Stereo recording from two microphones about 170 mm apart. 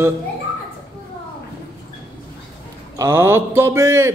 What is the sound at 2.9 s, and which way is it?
Mantra, 15° right (ahead or behind).